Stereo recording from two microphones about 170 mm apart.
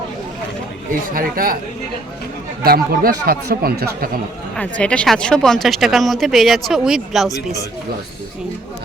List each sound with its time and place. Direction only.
1.1 s speech: 60° right (ahead or behind)
2.6 s speech: 60° right (ahead or behind)
4.5 s speech: 5° left (ahead or behind)